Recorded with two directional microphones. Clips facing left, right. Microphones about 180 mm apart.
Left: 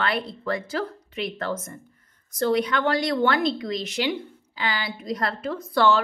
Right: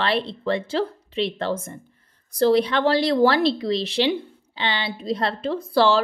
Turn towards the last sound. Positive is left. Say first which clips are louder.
# right 2 dB
turn(degrees=-30)  # may be behind; listen again after turning